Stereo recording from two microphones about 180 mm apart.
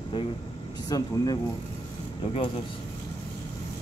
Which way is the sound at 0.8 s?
20° left (ahead or behind).